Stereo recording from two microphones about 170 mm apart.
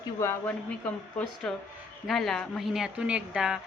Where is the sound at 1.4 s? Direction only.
5° left (ahead or behind).